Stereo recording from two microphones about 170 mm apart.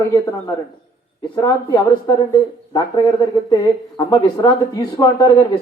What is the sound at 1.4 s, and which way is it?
Speech, 25° left (ahead or behind).